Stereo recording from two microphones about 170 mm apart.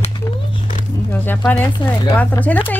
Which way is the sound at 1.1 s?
10° left (ahead or behind).